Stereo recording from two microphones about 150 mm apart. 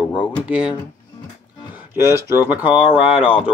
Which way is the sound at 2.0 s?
15° right (ahead or behind).